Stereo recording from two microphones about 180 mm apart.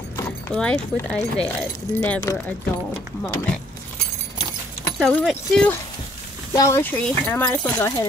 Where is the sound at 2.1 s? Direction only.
15° left (ahead or behind).